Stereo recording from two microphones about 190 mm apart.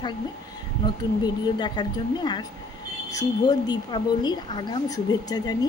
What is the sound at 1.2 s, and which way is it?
A woman's voice, 25° left (ahead or behind).